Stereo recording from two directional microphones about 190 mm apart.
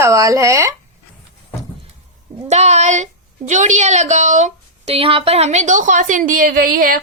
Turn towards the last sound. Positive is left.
turn(degrees=-50)  # may be behind; listen again after turning